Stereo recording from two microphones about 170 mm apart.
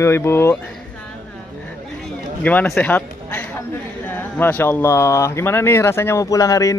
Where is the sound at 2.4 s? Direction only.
10° left (ahead or behind).